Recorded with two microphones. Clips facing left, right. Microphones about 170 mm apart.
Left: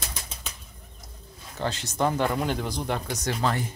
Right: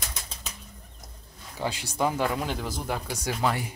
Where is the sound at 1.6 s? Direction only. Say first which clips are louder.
Left 1 dB; 10° right (ahead or behind).